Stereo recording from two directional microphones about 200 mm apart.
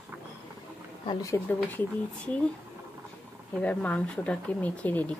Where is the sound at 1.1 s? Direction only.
15° left (ahead or behind).